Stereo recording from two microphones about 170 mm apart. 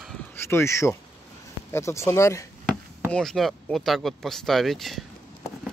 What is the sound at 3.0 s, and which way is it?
Speech, 5° left (ahead or behind).